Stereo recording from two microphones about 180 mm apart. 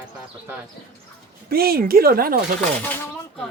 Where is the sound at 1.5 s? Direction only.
55° right (ahead or behind).